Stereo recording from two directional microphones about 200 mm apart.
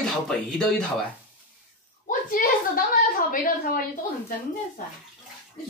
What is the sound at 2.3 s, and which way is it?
Speech, 45° left (ahead or behind).